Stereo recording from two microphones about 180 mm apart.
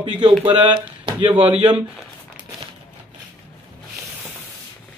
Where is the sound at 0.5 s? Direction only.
25° right (ahead or behind).